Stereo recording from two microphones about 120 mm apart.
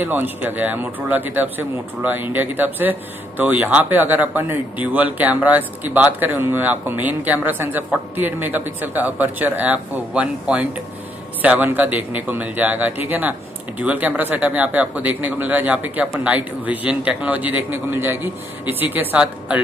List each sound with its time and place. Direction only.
0.0 s speech: 15° right (ahead or behind)